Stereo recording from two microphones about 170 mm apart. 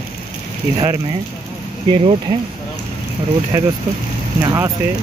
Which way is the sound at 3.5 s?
15° right (ahead or behind).